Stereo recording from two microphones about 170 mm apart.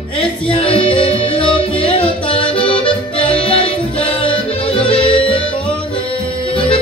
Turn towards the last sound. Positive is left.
turn(degrees=30)  # may be behind; listen again after turning